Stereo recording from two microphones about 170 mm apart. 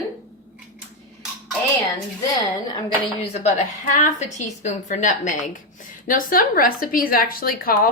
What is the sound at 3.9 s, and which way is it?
A woman's voice, 45° left (ahead or behind).